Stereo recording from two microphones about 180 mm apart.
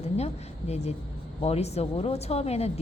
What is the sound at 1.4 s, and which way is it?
Speech, 35° left (ahead or behind).